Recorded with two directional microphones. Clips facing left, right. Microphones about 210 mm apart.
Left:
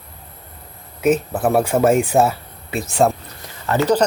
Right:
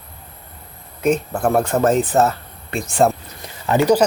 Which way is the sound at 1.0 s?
5° left (ahead or behind).